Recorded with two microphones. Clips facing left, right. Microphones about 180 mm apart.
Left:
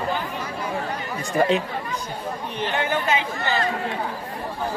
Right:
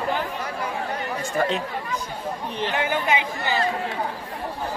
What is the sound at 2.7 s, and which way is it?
Speech, 10° right (ahead or behind).